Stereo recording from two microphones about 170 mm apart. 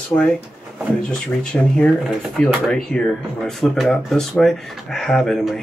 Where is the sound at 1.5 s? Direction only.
5° left (ahead or behind).